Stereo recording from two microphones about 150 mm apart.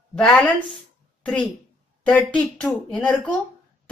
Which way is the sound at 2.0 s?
5° left (ahead or behind).